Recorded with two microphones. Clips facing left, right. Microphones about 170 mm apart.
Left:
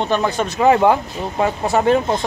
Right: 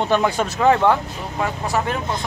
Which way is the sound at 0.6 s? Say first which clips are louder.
Left 3 dB; 10° left (ahead or behind).